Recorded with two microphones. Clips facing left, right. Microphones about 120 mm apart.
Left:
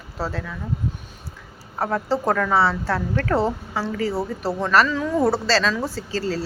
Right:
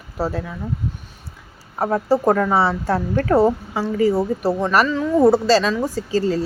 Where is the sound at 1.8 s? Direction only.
20° right (ahead or behind).